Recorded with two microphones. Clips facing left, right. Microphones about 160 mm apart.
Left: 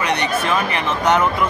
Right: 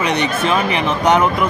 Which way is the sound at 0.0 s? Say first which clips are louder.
Right 2 dB; 20° right (ahead or behind).